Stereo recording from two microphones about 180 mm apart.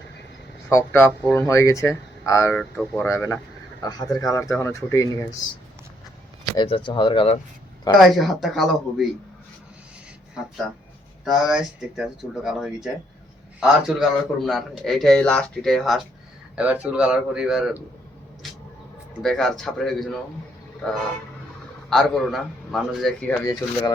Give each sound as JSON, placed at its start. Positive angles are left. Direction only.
{"t": 0.7, "sound": "speech", "side_deg": 15}
{"t": 6.6, "sound": "speech", "side_deg": 30}
{"t": 8.0, "sound": "a man's voice", "side_deg": 0}
{"t": 11.3, "sound": "a man's voice", "side_deg": 0}
{"t": 19.2, "sound": "a man's voice", "side_deg": 0}
{"t": 21.8, "sound": "a man's voice", "side_deg": 0}
{"t": 23.5, "sound": "speech", "side_deg": 20}